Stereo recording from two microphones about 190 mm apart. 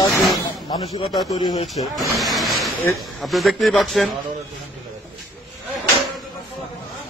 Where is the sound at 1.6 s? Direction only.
Centre (ahead or behind).